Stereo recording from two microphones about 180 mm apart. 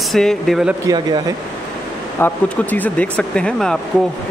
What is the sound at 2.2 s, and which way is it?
Speech, 10° left (ahead or behind).